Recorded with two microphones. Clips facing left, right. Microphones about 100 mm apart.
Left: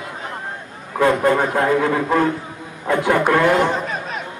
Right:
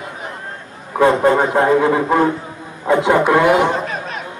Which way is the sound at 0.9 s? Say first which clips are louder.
Right 3 dB; 25° right (ahead or behind).